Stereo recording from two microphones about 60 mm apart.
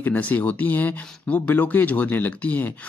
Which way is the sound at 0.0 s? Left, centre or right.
Left.